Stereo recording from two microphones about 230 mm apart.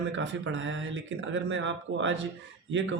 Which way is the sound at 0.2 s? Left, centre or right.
Right.